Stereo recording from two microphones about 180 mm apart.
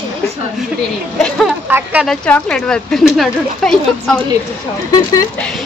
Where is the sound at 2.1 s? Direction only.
5° left (ahead or behind).